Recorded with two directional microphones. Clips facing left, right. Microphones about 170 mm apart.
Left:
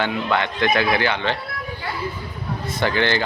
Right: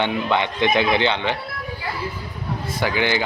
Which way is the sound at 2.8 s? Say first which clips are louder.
Left 1 dB; 10° right (ahead or behind).